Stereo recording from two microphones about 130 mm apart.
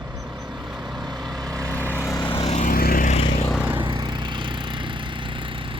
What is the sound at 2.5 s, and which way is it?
Vehicle, 75° left (ahead or behind).